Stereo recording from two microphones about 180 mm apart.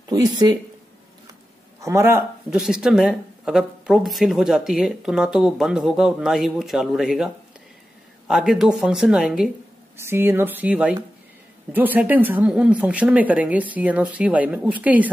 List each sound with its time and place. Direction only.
0.1 s speech: 20° right (ahead or behind)
1.8 s speech: 15° right (ahead or behind)
2.5 s speech: 5° right (ahead or behind)
8.3 s speech: centre (ahead or behind)
9.9 s speech: 15° right (ahead or behind)